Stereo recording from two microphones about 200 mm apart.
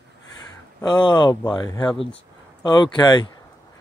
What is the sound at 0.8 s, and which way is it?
Speech, 20° left (ahead or behind).